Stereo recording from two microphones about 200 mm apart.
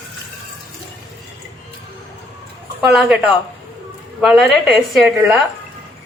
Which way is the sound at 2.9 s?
5° right (ahead or behind).